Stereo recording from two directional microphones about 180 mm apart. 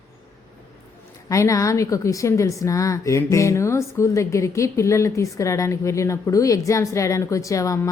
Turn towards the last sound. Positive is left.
turn(degrees=15)  # may be behind; listen again after turning